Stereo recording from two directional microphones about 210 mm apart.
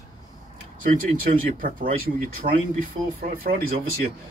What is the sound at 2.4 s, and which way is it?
Speech, 35° right (ahead or behind).